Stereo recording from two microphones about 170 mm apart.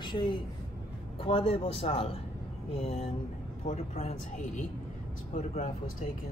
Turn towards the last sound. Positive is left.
turn(degrees=45)  # may be behind; listen again after turning